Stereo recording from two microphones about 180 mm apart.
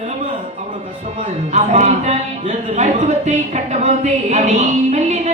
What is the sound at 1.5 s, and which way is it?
Speech, 40° right (ahead or behind).